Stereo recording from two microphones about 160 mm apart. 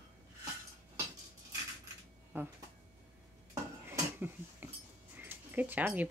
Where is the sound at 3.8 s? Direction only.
10° right (ahead or behind).